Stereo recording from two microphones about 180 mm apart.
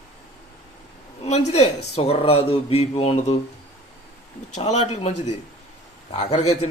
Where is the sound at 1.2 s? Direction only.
35° left (ahead or behind).